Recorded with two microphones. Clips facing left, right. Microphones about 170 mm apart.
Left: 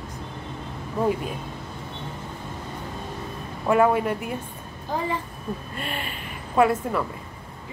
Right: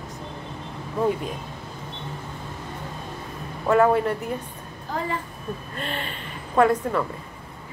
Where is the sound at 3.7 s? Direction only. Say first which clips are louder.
Right 1 dB; 10° left (ahead or behind).